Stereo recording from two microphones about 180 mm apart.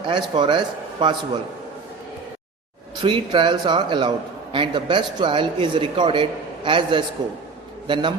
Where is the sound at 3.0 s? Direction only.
30° right (ahead or behind).